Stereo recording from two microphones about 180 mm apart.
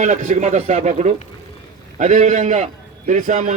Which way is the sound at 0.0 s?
40° right (ahead or behind).